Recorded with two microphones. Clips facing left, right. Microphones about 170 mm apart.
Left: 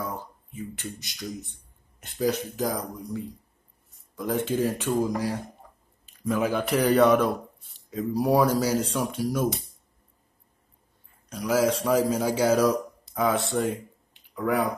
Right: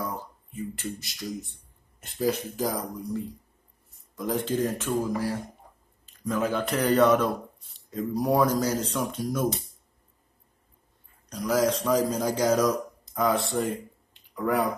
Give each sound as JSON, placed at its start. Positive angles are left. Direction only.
{"t": 0.0, "sound": "speech", "side_deg": 0}
{"t": 11.2, "sound": "speech", "side_deg": 5}